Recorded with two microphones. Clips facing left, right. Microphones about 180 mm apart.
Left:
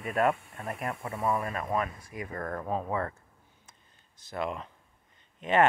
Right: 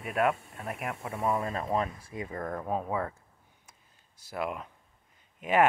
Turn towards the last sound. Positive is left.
turn(degrees=-10)  # may be behind; listen again after turning